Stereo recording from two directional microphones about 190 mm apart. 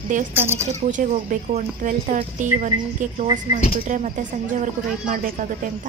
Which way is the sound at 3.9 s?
40° right (ahead or behind).